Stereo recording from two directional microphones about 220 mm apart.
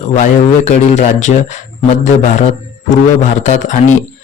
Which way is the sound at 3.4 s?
35° left (ahead or behind).